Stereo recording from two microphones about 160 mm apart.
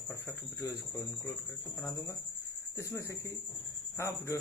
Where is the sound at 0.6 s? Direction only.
20° left (ahead or behind).